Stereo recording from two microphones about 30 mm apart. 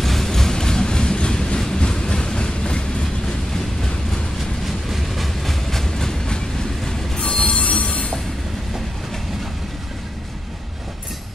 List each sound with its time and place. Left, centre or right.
0.0 s train: centre; by 3.1 s left
4.6 s train: centre
7.2 s train wheels squealing: left